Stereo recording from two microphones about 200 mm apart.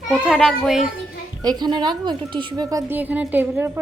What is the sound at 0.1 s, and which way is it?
Speech, centre (ahead or behind).